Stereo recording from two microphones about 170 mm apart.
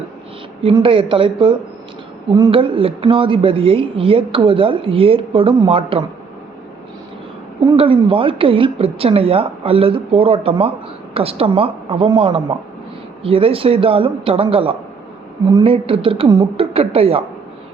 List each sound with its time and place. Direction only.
0.6 s speech: 30° right (ahead or behind)
7.6 s speech: 30° right (ahead or behind)